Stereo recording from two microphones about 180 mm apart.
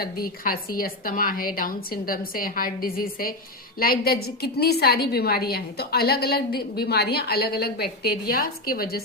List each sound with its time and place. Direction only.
0.0 s a woman's voice: 55° left (ahead or behind)